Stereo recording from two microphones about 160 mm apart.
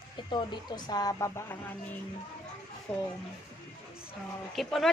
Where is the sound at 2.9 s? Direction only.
10° left (ahead or behind).